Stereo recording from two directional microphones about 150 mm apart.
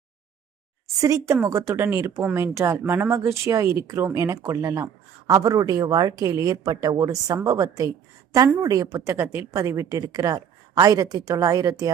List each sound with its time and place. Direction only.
1.0 s a woman's voice: 20° right (ahead or behind)